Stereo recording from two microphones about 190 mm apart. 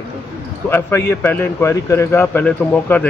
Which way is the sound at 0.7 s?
10° left (ahead or behind).